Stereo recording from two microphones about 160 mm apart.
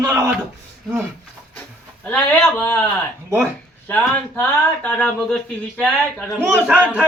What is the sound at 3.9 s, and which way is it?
A man's voice, 10° left (ahead or behind).